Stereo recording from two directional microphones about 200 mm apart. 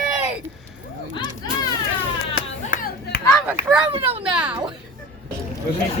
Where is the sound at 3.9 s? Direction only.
30° right (ahead or behind).